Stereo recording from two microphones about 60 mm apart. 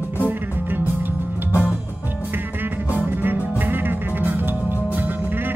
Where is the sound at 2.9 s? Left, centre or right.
Right.